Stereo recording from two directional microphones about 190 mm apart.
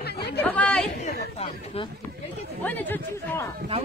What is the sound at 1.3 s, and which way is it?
Speech, 30° left (ahead or behind).